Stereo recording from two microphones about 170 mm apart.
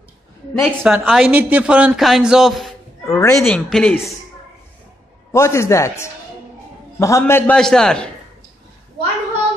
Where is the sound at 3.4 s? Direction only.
5° left (ahead or behind).